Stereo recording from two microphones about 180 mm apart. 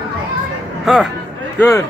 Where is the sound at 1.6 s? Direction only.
15° left (ahead or behind).